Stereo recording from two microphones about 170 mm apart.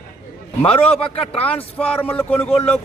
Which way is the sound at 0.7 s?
35° left (ahead or behind).